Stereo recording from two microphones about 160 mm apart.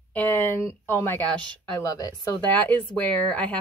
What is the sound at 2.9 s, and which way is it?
Speech, 10° left (ahead or behind).